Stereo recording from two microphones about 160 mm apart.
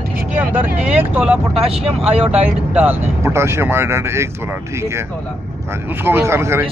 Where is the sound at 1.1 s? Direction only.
5° right (ahead or behind).